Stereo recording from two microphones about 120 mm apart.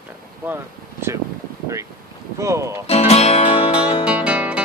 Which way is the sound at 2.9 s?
60° left (ahead or behind).